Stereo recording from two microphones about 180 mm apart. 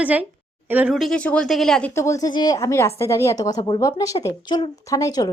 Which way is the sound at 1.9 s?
15° left (ahead or behind).